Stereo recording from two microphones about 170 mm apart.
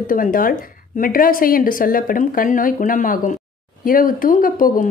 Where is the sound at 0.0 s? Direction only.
55° left (ahead or behind).